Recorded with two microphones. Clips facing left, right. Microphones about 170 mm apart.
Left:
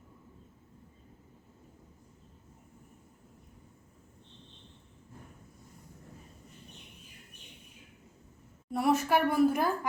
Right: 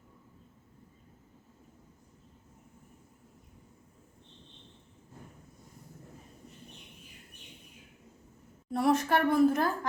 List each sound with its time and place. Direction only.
8.7 s a woman's voice: 5° left (ahead or behind)